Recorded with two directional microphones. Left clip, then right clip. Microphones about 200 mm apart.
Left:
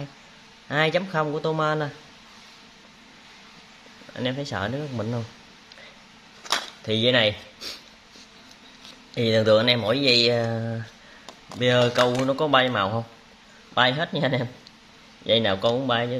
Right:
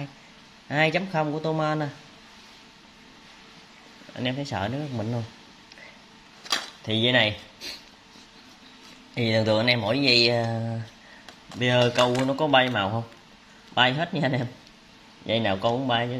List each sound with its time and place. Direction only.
0.7 s speech: 10° left (ahead or behind)
4.2 s speech: 10° left (ahead or behind)
6.9 s speech: 15° left (ahead or behind)
9.1 s speech: 10° left (ahead or behind)